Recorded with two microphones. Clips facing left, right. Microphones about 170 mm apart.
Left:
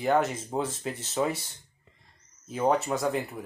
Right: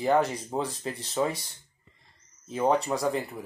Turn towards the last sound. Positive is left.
turn(degrees=0)  # may be behind; listen again after turning